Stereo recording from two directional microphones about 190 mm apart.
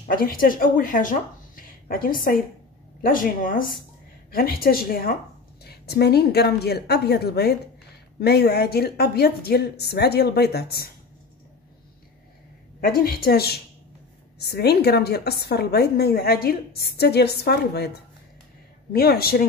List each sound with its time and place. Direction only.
0.1 s a woman's voice: 50° left (ahead or behind)
12.8 s a woman's voice: 50° left (ahead or behind)